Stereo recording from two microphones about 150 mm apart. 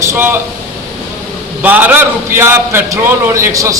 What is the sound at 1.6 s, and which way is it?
A man's voice, 10° right (ahead or behind).